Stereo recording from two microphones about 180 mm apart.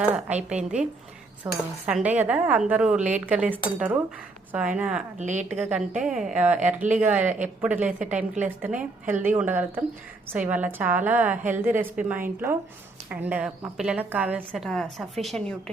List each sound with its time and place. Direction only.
0.0 s a woman's voice: 10° right (ahead or behind)
1.5 s a woman's voice: 15° right (ahead or behind)
5.1 s a woman's voice: 40° right (ahead or behind)
5.5 s a woman's voice: 10° right (ahead or behind)